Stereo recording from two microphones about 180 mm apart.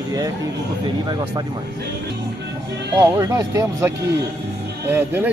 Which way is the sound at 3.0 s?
15° right (ahead or behind).